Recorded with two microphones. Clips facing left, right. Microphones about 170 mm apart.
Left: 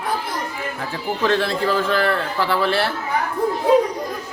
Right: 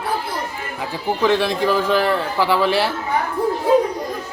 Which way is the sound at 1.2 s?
15° right (ahead or behind).